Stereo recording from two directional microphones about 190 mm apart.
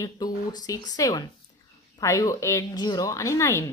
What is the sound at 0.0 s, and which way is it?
A woman's voice, 20° left (ahead or behind).